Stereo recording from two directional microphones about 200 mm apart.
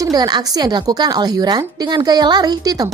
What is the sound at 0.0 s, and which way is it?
A woman's voice, 20° right (ahead or behind).